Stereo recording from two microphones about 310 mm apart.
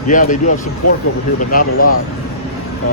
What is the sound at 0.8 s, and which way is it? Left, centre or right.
Speech, left.